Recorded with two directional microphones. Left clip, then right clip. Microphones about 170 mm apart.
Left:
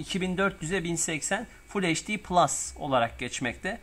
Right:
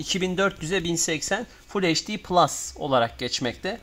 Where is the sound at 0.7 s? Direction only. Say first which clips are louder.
Right 5 dB; 60° right (ahead or behind).